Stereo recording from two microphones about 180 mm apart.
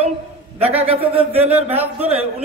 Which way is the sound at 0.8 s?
35° right (ahead or behind).